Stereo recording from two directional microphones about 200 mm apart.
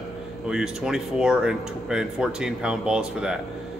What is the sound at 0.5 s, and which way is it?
Speech, 5° right (ahead or behind).